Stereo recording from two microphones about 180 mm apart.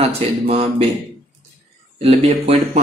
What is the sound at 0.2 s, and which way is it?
Speech, 35° right (ahead or behind).